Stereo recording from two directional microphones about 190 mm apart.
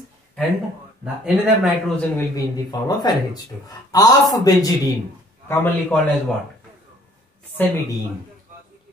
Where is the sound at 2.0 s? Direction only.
15° left (ahead or behind).